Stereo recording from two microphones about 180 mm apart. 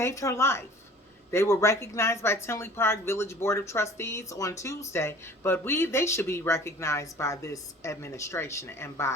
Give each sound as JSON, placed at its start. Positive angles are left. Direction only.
{"t": 0.0, "sound": "speech", "side_deg": 15}